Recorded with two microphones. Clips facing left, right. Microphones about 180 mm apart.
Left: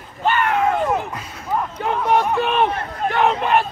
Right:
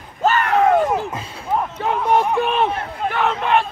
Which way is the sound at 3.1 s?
15° left (ahead or behind).